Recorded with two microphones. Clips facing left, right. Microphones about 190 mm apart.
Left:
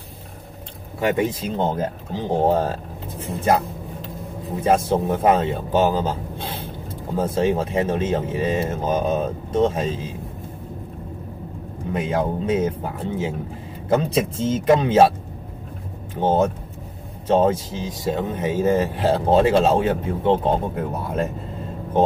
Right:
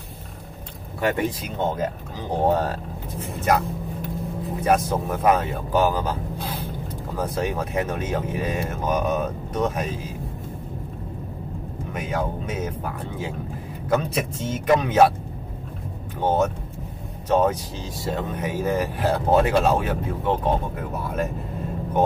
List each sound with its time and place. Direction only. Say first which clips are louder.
1.0 s speech: left 3 dB; 20° left (ahead or behind)
11.9 s speech: left 5 dB; 30° left (ahead or behind)
16.2 s speech: left 3 dB; 25° left (ahead or behind)